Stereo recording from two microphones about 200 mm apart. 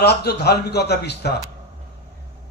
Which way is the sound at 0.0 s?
55° left (ahead or behind).